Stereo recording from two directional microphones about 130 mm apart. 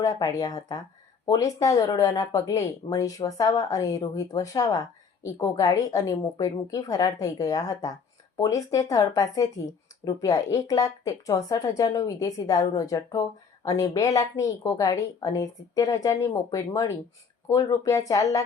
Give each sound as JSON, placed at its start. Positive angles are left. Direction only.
{"t": 0.0, "sound": "speech", "side_deg": 25}